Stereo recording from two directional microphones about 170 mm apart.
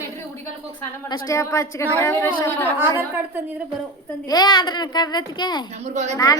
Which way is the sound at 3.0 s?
15° right (ahead or behind).